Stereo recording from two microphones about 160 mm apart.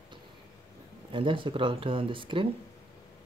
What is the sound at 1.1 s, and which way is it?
Speech, 30° right (ahead or behind).